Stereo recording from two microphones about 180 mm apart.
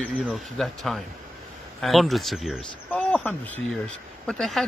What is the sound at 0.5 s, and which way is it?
Speech, centre (ahead or behind).